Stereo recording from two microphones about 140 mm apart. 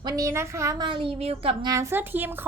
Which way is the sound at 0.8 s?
40° right (ahead or behind).